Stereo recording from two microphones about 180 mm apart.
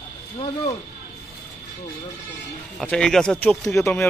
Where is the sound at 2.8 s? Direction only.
5° left (ahead or behind).